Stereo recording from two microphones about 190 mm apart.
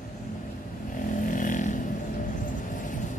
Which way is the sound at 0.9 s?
45° left (ahead or behind).